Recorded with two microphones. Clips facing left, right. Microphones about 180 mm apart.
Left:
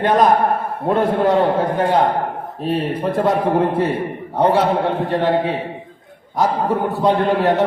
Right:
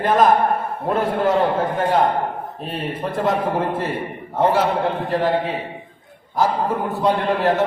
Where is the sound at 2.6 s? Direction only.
Centre (ahead or behind).